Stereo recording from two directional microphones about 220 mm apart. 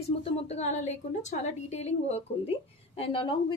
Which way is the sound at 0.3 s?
30° left (ahead or behind).